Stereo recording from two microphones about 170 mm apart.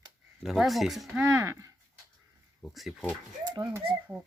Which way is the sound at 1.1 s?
15° right (ahead or behind).